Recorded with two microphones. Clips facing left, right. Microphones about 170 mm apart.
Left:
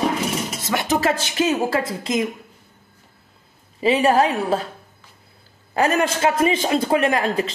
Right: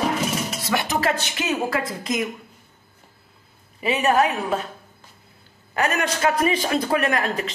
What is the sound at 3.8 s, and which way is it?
Speech, 30° left (ahead or behind).